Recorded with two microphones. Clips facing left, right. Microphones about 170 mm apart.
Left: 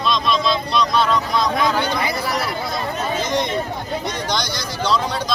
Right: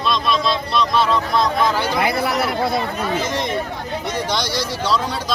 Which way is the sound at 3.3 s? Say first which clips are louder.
Left 1 dB; 5° right (ahead or behind).